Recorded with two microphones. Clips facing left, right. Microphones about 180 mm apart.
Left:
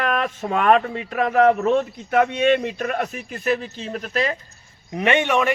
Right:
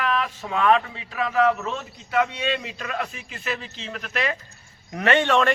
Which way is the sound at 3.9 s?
35° left (ahead or behind).